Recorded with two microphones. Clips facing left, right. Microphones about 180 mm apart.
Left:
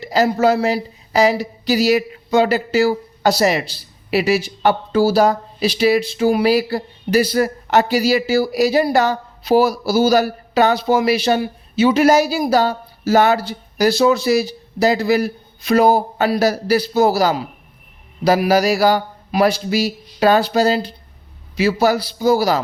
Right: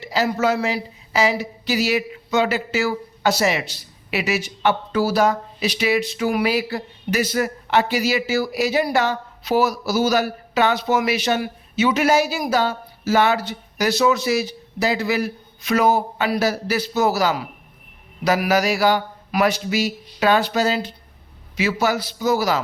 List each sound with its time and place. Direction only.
0.0 s speech: 40° left (ahead or behind)